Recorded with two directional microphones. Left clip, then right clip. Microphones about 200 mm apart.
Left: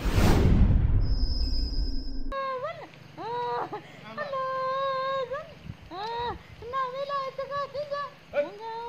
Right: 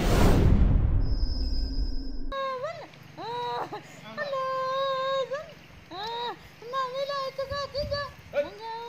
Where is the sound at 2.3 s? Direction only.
50° right (ahead or behind).